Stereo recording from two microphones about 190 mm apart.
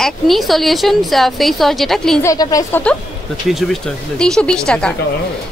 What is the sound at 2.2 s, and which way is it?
A woman's voice, 20° left (ahead or behind).